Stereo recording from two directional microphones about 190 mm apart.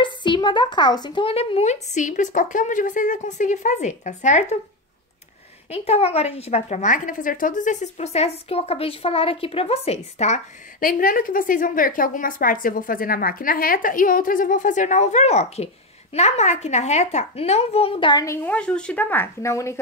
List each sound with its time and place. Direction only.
0.0 s a woman's voice: 25° left (ahead or behind)
5.7 s a woman's voice: 30° left (ahead or behind); by 19.8 s 15° left (ahead or behind)